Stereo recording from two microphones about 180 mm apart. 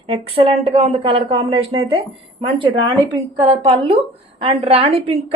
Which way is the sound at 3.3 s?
30° right (ahead or behind).